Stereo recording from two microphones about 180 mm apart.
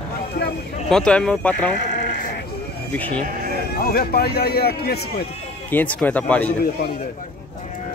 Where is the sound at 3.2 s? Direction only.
50° right (ahead or behind).